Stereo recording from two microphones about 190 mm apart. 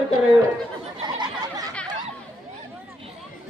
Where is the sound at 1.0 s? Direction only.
20° right (ahead or behind).